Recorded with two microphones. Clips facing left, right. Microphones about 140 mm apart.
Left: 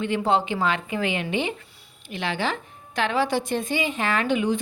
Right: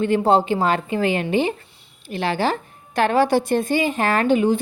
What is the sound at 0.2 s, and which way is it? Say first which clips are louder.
A woman's voice: right 5 dB; 35° right (ahead or behind).